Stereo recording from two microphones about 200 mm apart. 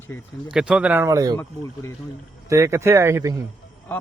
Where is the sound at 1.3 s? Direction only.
10° left (ahead or behind).